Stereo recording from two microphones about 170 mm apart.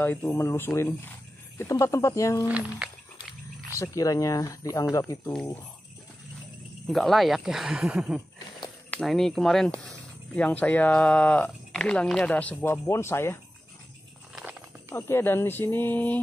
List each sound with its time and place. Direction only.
0.0 s speech: 10° left (ahead or behind)
2.4 s speech: 10° right (ahead or behind)
3.8 s speech: 20° left (ahead or behind)
5.3 s speech: 5° left (ahead or behind)
6.9 s speech: centre (ahead or behind)
14.3 s a sound: 5° right (ahead or behind)
14.9 s speech: 15° left (ahead or behind)